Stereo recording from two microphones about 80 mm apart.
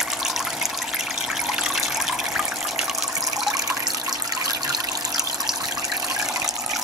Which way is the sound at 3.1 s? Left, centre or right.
Right.